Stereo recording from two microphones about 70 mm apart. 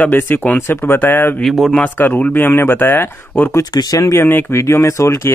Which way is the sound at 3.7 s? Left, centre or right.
Left.